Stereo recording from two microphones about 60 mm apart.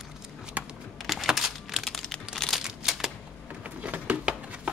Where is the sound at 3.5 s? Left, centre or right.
Right.